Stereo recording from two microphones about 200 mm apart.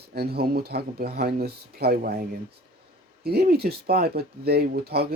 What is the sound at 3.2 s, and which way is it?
Speech, 50° right (ahead or behind).